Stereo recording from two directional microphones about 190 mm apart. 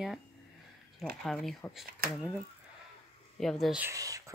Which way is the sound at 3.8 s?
15° right (ahead or behind).